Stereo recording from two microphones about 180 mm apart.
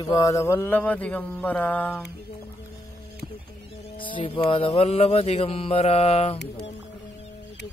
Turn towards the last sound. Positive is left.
turn(degrees=35)  # may be behind; listen again after turning